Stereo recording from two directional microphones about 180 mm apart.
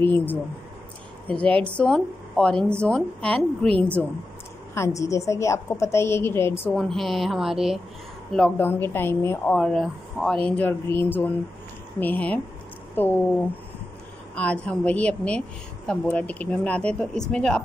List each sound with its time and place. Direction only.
0.0 s speech: 10° left (ahead or behind)
6.7 s speech: centre (ahead or behind)
8.5 s speech: 10° left (ahead or behind)
14.3 s speech: 5° left (ahead or behind)